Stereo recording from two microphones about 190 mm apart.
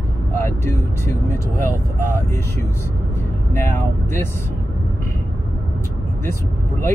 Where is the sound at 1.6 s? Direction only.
45° right (ahead or behind).